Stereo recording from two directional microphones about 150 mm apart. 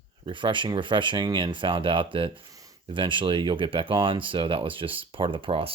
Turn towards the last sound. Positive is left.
turn(degrees=-40)  # may be behind; listen again after turning